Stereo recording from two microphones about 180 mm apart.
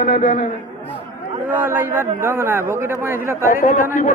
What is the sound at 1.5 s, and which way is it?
A man's voice, 10° right (ahead or behind).